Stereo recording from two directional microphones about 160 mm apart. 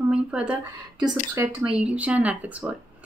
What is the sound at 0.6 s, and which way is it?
Speech, 25° right (ahead or behind).